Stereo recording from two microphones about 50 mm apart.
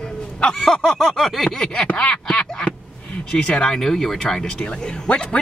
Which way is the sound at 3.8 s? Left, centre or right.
Centre.